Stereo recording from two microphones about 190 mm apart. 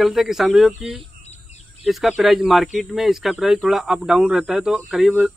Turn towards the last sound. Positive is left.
turn(degrees=0)  # may be behind; listen again after turning